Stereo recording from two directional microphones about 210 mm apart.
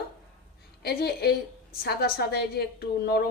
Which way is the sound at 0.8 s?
50° left (ahead or behind).